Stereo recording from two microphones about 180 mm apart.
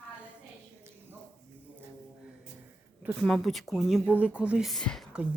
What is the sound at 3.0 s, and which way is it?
Speech, centre (ahead or behind).